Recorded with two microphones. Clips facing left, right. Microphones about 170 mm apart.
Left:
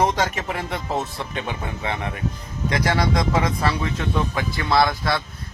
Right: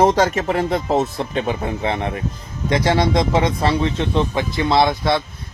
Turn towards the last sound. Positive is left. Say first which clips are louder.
# right 3 dB
turn(degrees=-25)  # may be behind; listen again after turning